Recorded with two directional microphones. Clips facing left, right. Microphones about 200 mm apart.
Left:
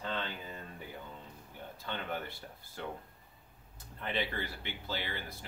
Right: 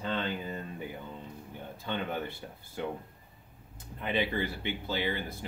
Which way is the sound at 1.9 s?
15° right (ahead or behind).